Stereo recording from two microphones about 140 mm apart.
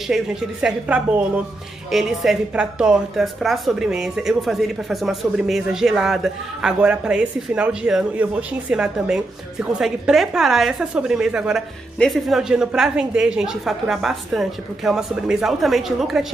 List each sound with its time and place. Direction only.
0.1 s a woman's voice: 5° right (ahead or behind)